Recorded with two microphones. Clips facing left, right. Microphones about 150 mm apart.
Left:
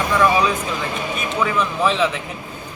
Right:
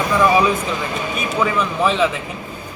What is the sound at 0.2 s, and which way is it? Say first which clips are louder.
A man's voice: right 2 dB; 10° right (ahead or behind).